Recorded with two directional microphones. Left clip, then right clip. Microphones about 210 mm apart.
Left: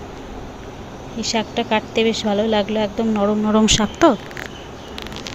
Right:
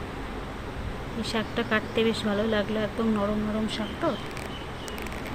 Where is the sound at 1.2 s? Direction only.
20° left (ahead or behind).